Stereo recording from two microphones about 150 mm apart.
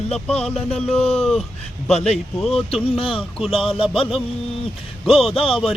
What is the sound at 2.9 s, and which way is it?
Speech, 35° left (ahead or behind).